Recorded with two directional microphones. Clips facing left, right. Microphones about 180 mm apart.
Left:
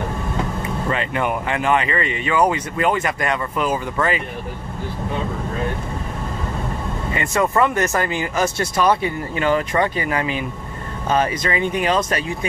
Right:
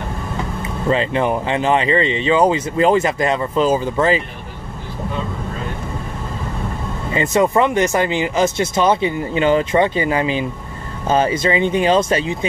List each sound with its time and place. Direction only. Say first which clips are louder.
0.8 s speech: right 6 dB; 30° right (ahead or behind)
7.2 s speech: right 4 dB; 20° right (ahead or behind)